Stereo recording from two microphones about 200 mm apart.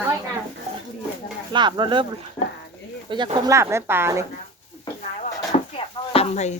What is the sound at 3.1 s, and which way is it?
Speech, 20° right (ahead or behind).